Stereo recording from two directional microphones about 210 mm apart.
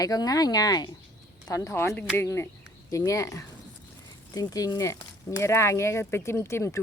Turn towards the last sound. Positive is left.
turn(degrees=10)  # may be behind; listen again after turning